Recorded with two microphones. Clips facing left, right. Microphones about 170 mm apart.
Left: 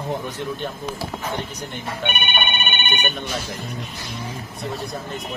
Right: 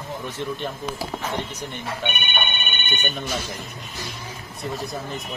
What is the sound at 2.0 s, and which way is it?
Telephone, 60° left (ahead or behind).